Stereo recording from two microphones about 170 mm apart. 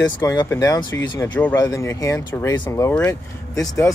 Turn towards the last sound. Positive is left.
turn(degrees=20)  # may be behind; listen again after turning